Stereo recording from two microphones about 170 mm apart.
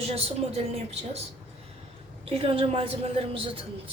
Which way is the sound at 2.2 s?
35° right (ahead or behind).